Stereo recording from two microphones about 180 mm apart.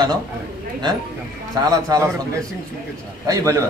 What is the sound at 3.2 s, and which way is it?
Speech, 15° right (ahead or behind).